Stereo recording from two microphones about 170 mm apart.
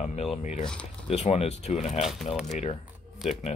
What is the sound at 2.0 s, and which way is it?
Speech, centre (ahead or behind).